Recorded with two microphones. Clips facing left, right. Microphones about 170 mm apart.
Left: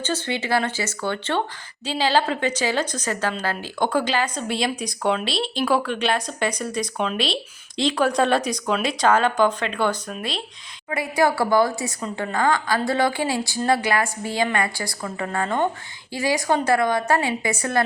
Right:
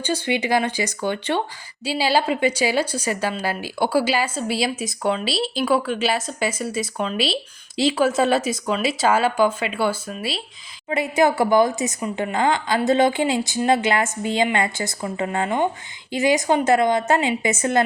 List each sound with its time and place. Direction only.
0.0 s a woman's voice: 10° right (ahead or behind)
10.8 s a woman's voice: 25° right (ahead or behind)